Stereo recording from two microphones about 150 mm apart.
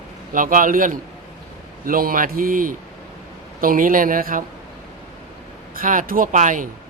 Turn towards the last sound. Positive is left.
turn(degrees=-60)  # may be behind; listen again after turning